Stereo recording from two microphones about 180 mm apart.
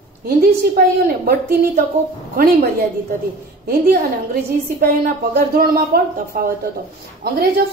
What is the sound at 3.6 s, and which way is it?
A woman's voice, 55° right (ahead or behind).